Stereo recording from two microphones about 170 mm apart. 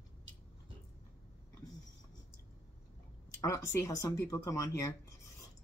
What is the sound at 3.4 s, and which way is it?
Speech, 20° left (ahead or behind).